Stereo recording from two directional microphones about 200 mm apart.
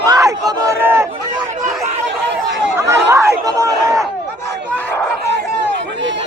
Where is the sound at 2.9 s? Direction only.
15° right (ahead or behind).